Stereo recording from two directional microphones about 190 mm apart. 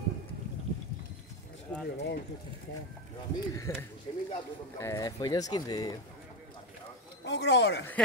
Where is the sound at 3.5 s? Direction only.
15° left (ahead or behind).